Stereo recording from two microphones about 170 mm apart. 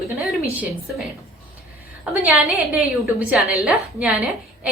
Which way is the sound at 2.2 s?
Centre (ahead or behind).